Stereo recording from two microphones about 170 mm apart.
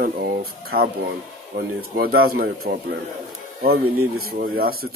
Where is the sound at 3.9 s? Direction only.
60° right (ahead or behind).